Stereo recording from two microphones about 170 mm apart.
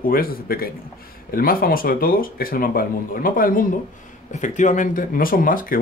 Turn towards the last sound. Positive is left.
turn(degrees=55)  # may be behind; listen again after turning